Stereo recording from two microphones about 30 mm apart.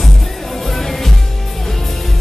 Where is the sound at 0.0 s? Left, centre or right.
Centre.